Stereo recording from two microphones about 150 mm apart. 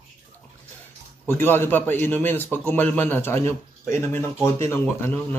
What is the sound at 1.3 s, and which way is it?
A man's voice, 15° left (ahead or behind).